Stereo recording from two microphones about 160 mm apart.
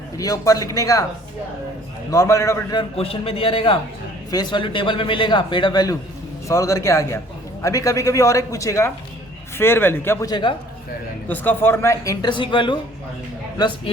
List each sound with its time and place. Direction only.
0.2 s a man's voice: 20° left (ahead or behind)
2.0 s a man's voice: 20° left (ahead or behind)
3.0 s a man's voice: 35° left (ahead or behind)
11.3 s a man's voice: 15° left (ahead or behind); by 13.9 s 30° left (ahead or behind)